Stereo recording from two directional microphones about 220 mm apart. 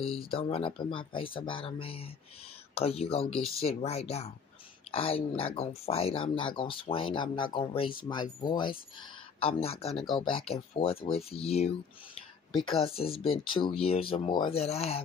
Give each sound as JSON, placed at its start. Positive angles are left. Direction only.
{"t": 0.3, "sound": "speech", "side_deg": 25}